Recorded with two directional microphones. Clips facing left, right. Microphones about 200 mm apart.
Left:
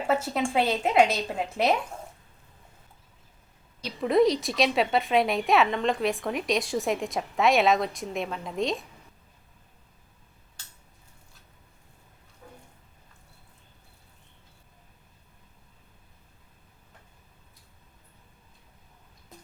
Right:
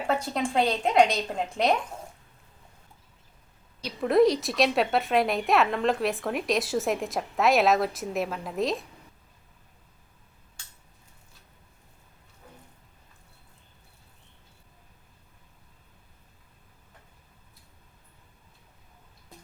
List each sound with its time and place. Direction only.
0.1 s a woman's voice: 5° left (ahead or behind)
4.0 s a woman's voice: centre (ahead or behind)